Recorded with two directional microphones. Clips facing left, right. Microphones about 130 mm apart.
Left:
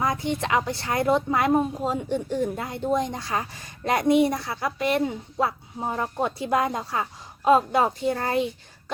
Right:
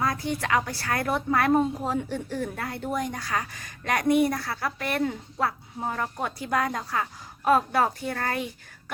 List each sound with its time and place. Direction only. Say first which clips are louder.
0.0 s a woman's voice: left 2 dB; 20° left (ahead or behind)